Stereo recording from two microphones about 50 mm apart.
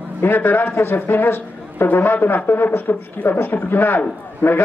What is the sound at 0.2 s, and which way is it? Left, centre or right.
A man's voice, left.